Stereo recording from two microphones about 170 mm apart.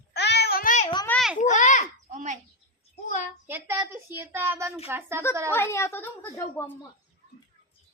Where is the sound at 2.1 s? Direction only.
45° right (ahead or behind).